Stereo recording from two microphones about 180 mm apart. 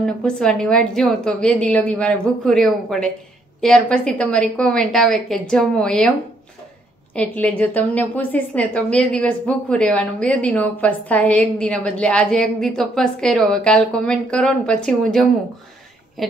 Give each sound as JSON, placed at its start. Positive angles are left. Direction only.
{"t": 0.0, "sound": "a woman's voice", "side_deg": 5}
{"t": 7.2, "sound": "a woman's voice", "side_deg": 10}